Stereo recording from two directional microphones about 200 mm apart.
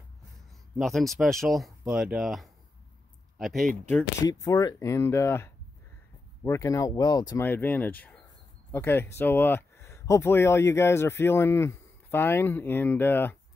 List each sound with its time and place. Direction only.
0.7 s speech: centre (ahead or behind)
4.2 s speech: 15° left (ahead or behind)